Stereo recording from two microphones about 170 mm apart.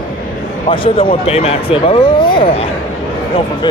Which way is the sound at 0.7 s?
30° left (ahead or behind).